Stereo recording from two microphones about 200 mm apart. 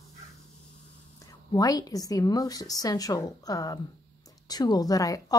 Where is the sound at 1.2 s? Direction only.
20° left (ahead or behind).